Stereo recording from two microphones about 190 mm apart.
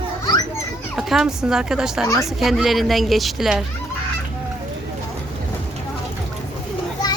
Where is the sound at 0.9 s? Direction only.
Centre (ahead or behind).